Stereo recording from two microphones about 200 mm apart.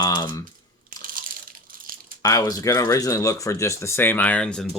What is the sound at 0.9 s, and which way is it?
Crushing, 45° right (ahead or behind).